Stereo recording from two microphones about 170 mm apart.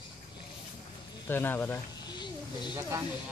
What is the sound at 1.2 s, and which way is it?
Speech, 10° left (ahead or behind).